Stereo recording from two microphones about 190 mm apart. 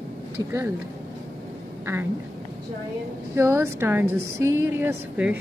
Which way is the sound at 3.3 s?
15° right (ahead or behind).